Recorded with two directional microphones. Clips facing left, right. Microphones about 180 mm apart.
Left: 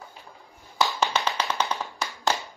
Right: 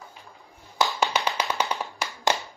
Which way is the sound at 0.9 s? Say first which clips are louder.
Even; 15° right (ahead or behind).